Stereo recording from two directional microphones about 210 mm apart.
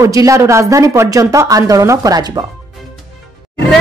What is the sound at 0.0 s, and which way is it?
Speech, 15° right (ahead or behind).